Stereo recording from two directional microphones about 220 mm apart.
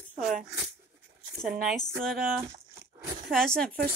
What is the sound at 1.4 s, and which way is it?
Speech, centre (ahead or behind).